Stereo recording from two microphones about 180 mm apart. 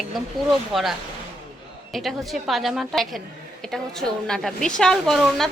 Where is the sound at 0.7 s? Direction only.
Centre (ahead or behind).